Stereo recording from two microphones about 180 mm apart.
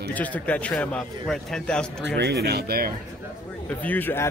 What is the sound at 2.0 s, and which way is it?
Speech, 70° right (ahead or behind).